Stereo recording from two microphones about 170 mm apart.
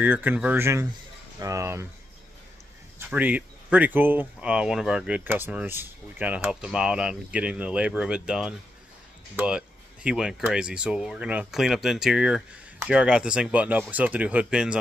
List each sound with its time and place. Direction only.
0.0 s speech: 10° right (ahead or behind)
3.1 s speech: 10° right (ahead or behind)